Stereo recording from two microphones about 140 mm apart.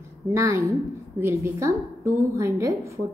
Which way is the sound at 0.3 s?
20° right (ahead or behind).